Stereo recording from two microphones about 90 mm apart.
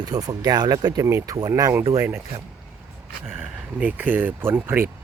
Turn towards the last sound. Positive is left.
turn(degrees=-25)  # may be behind; listen again after turning